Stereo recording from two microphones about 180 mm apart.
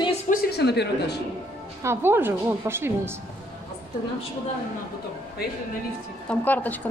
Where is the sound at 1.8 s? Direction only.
10° right (ahead or behind).